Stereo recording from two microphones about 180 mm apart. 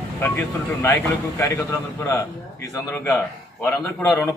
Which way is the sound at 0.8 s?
15° left (ahead or behind).